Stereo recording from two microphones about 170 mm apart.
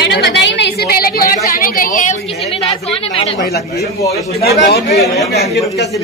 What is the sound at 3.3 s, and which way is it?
Speech, 70° left (ahead or behind).